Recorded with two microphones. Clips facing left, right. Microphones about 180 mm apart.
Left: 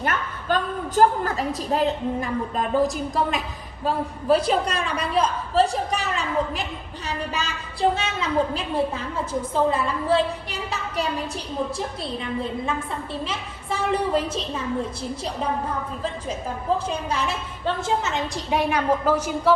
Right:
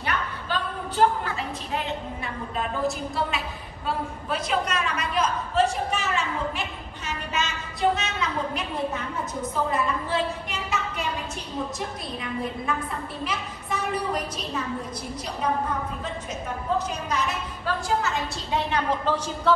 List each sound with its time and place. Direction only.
0.0 s a woman's voice: 45° left (ahead or behind)
13.2 s a woman's voice: 30° left (ahead or behind)
16.0 s a woman's voice: 30° left (ahead or behind); by 19.5 s 10° left (ahead or behind)